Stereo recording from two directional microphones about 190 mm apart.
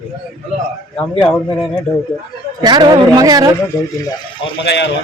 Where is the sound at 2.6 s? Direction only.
20° right (ahead or behind).